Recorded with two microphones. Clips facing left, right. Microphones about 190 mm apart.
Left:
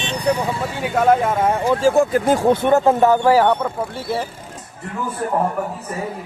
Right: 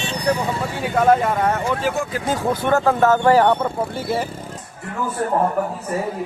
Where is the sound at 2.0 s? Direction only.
50° left (ahead or behind).